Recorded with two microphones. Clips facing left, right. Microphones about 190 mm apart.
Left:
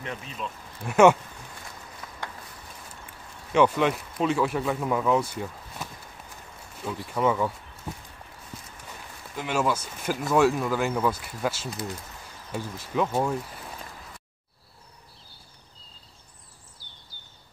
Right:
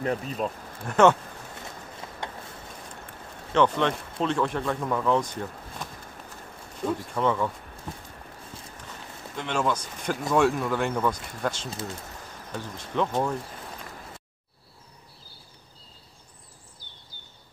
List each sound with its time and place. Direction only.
0.0 s speech: 40° right (ahead or behind)
0.8 s speech: 10° left (ahead or behind)
2.0 s mechanisms: 25° right (ahead or behind)
3.5 s speech: 10° left (ahead or behind)
7.2 s speech: 5° left (ahead or behind)
8.5 s walk: 30° right (ahead or behind)
9.3 s speech: 5° left (ahead or behind)